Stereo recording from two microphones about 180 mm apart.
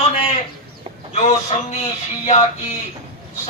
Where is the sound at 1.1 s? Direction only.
40° left (ahead or behind).